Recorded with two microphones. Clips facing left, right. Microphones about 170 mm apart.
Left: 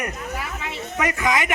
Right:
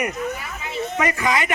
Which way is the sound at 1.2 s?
15° left (ahead or behind).